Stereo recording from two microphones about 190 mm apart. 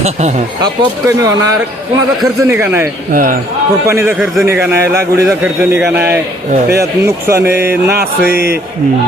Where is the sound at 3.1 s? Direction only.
45° right (ahead or behind).